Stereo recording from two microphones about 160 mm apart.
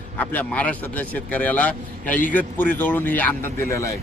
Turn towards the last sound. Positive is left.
turn(degrees=15)  # may be behind; listen again after turning